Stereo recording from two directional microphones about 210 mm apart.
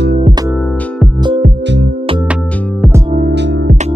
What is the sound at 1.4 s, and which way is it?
Music, 50° right (ahead or behind).